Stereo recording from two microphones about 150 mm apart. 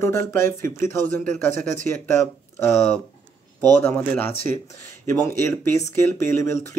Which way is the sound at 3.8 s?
10° left (ahead or behind).